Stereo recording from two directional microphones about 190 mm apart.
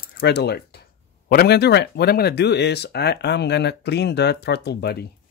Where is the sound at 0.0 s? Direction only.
55° left (ahead or behind).